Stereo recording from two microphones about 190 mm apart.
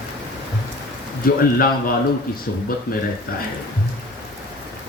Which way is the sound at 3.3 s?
50° left (ahead or behind).